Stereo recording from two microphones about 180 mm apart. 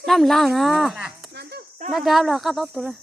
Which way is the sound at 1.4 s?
65° right (ahead or behind).